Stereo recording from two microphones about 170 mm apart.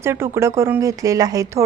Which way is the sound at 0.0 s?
15° right (ahead or behind).